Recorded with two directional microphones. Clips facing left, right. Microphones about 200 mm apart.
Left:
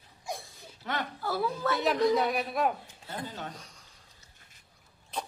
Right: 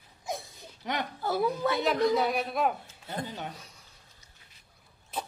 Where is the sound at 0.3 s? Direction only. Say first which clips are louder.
Right 3 dB; 15° right (ahead or behind).